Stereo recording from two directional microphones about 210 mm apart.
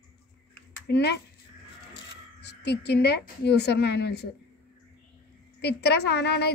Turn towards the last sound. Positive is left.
turn(degrees=50)  # may be behind; listen again after turning